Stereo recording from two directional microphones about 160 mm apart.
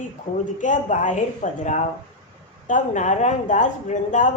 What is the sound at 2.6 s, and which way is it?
Speech, 50° left (ahead or behind).